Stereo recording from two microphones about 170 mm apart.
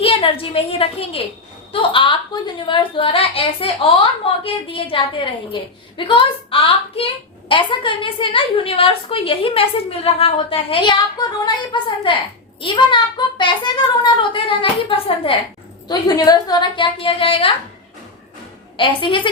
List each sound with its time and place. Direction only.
0.0 s a woman's voice: 30° left (ahead or behind)
18.8 s a child's voice: 30° left (ahead or behind)